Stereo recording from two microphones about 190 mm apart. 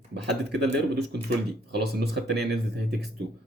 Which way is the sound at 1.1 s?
60° right (ahead or behind).